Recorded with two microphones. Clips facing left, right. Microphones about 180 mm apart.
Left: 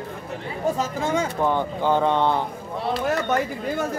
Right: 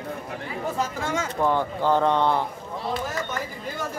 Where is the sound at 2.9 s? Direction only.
70° left (ahead or behind).